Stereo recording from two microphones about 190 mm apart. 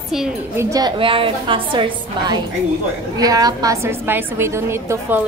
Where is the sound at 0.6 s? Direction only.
20° right (ahead or behind).